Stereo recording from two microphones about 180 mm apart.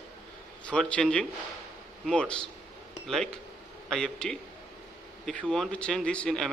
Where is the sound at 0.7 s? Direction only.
5° left (ahead or behind).